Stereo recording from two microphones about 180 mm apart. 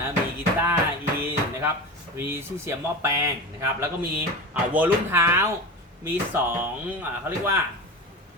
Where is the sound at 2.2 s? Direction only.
15° right (ahead or behind).